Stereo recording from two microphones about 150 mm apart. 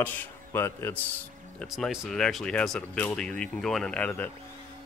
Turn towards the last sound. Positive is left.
turn(degrees=10)  # may be behind; listen again after turning